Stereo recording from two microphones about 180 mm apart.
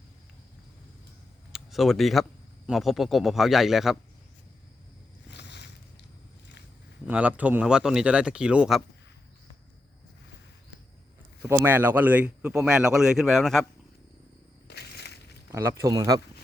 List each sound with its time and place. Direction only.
1.5 s speech: centre (ahead or behind)
5.3 s a sound: 70° left (ahead or behind)
7.0 s speech: 10° right (ahead or behind)
11.4 s speech: 15° right (ahead or behind)
14.7 s crushing: 65° left (ahead or behind)
15.5 s speech: 15° right (ahead or behind)